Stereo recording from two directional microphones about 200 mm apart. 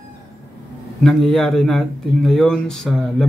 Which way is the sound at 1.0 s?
Centre (ahead or behind).